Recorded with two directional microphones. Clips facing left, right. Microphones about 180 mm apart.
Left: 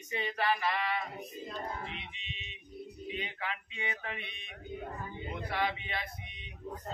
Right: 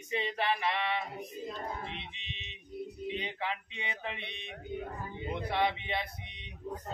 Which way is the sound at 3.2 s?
30° right (ahead or behind).